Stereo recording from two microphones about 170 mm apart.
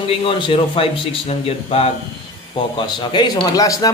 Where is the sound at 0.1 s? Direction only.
30° left (ahead or behind).